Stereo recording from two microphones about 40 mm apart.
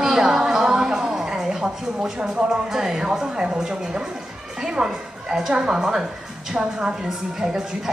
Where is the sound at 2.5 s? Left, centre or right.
Centre.